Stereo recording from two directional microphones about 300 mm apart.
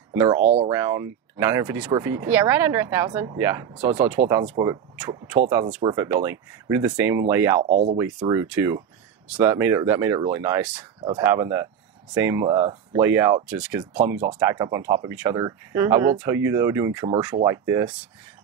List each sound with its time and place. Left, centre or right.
0.1 s speech: centre
0.4 s speech: right
0.7 s speech: centre
7.6 s speech: right
8.0 s speech: centre